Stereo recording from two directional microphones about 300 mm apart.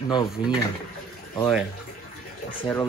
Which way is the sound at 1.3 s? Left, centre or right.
Centre.